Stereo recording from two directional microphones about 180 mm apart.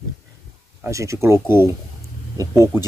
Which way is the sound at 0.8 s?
15° right (ahead or behind).